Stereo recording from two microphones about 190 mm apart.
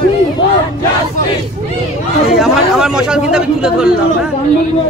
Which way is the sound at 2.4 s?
5° right (ahead or behind).